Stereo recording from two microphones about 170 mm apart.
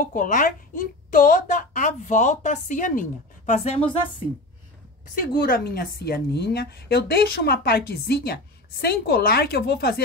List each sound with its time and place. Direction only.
0.1 s a woman's voice: 50° left (ahead or behind)
5.1 s a woman's voice: 60° left (ahead or behind)